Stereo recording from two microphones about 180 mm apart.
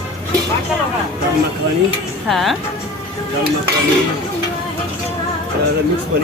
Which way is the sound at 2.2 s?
Centre (ahead or behind).